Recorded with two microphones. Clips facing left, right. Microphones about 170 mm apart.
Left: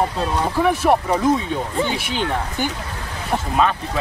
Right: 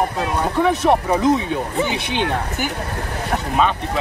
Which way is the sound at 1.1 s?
15° right (ahead or behind).